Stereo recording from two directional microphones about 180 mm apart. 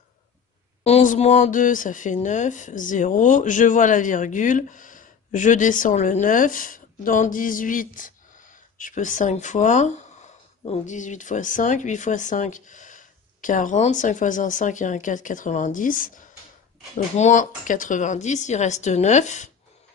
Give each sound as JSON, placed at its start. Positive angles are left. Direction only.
{"t": 0.8, "sound": "a woman's voice", "side_deg": 40}